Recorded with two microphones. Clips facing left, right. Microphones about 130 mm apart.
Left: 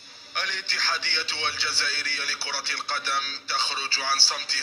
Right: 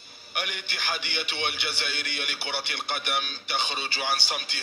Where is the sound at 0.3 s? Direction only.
10° right (ahead or behind).